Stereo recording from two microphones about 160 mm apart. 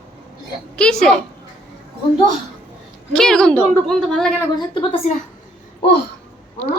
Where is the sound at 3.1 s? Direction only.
5° left (ahead or behind).